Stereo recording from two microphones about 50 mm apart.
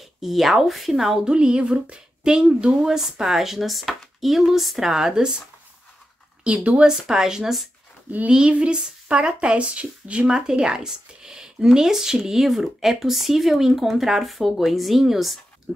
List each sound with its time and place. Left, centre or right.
0.0 s speech: centre
6.4 s speech: right
6.9 s speech: centre